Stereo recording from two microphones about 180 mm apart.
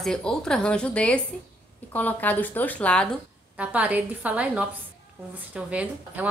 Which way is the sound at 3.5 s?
10° right (ahead or behind).